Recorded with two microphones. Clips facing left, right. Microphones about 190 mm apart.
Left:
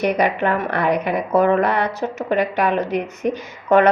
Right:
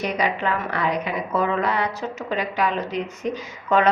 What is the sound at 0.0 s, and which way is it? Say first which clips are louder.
Speech: left 5 dB; 60° left (ahead or behind).